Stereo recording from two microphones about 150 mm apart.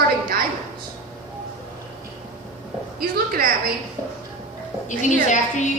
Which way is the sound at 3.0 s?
85° right.